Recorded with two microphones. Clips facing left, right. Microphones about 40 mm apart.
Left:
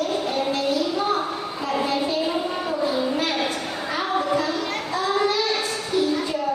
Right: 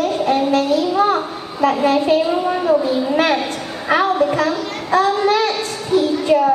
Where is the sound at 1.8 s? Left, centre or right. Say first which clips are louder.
Right 8 dB; right.